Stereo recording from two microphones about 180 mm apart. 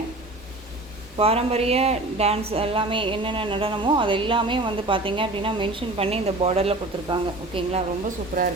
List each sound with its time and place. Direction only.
1.1 s speech: 35° right (ahead or behind)